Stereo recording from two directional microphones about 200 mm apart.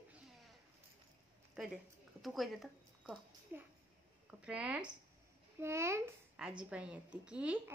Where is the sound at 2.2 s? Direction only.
Centre (ahead or behind).